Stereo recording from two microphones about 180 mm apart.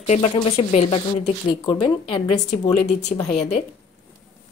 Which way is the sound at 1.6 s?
25° left (ahead or behind).